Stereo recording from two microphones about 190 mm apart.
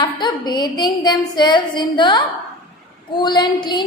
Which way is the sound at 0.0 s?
20° left (ahead or behind).